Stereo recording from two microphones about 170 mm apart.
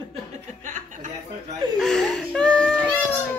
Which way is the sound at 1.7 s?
Centre (ahead or behind).